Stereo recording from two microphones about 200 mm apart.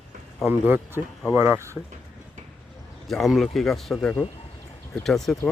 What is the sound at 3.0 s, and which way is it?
Speech, centre (ahead or behind).